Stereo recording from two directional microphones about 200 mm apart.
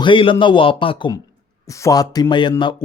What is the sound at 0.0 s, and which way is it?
Speech, 25° left (ahead or behind).